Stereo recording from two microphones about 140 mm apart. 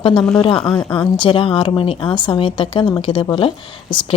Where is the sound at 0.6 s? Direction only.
5° left (ahead or behind).